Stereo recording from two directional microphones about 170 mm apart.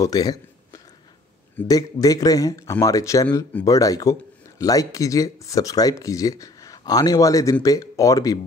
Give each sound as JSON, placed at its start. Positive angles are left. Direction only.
{"t": 0.0, "sound": "speech", "side_deg": 20}
{"t": 1.7, "sound": "speech", "side_deg": 20}